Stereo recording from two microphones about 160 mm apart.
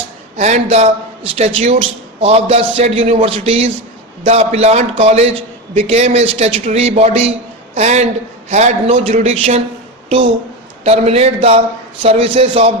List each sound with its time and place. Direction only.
0.3 s a man's voice: 45° right (ahead or behind)
10.8 s a man's voice: 40° right (ahead or behind)